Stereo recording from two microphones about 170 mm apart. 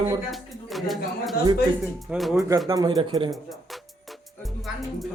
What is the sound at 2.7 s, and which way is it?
Speech, 20° right (ahead or behind).